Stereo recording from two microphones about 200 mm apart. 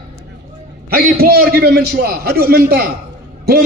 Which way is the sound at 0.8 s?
50° right (ahead or behind).